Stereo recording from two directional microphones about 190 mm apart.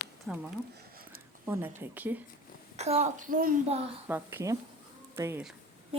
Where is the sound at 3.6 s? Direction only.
30° right (ahead or behind).